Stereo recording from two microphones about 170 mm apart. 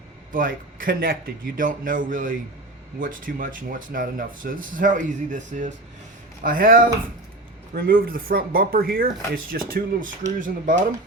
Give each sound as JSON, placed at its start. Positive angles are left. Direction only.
{"t": 0.3, "sound": "speech", "side_deg": -55}
{"t": 7.9, "sound": "speech", "side_deg": -60}